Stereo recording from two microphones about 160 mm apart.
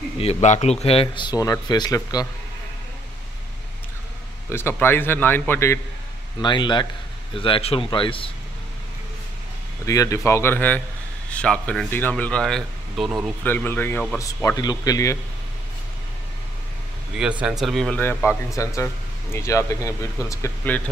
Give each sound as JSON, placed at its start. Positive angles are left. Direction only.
{"t": 0.2, "sound": "speech", "side_deg": 45}
{"t": 4.5, "sound": "speech", "side_deg": 15}
{"t": 6.4, "sound": "speech", "side_deg": 30}
{"t": 9.8, "sound": "speech", "side_deg": 20}
{"t": 13.4, "sound": "speech", "side_deg": 10}
{"t": 17.2, "sound": "speech", "side_deg": -10}
{"t": 18.5, "sound": "speech", "side_deg": 20}